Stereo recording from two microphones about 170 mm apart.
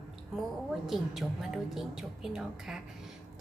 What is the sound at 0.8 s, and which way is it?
A woman's voice, centre (ahead or behind).